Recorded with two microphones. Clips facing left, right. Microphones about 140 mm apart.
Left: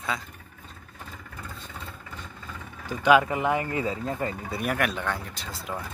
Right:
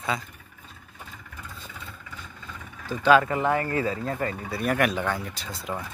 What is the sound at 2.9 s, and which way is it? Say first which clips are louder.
Speech: right 1 dB; 15° left (ahead or behind).